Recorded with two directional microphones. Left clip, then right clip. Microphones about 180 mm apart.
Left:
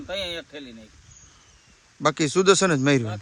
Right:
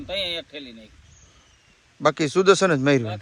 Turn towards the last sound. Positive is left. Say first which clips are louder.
# right 2 dB
turn(degrees=5)  # may be behind; listen again after turning